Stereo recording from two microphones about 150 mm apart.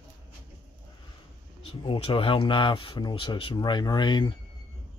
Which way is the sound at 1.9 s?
35° left (ahead or behind).